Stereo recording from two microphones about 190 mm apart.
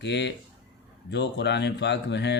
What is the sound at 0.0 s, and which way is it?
Speech, 65° left (ahead or behind).